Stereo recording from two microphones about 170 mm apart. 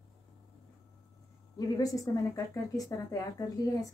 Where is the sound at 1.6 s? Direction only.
20° left (ahead or behind).